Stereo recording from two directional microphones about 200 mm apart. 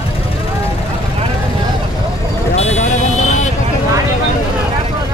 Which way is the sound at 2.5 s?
35° left (ahead or behind).